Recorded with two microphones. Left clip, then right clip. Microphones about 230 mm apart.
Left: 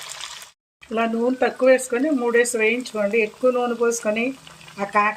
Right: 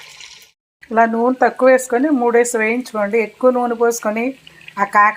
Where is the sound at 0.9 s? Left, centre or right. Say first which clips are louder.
Right 7 dB; centre.